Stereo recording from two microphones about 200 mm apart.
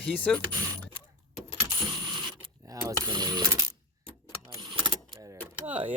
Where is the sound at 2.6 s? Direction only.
20° right (ahead or behind).